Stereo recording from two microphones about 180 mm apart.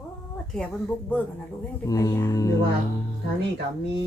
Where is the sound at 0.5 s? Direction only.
5° left (ahead or behind).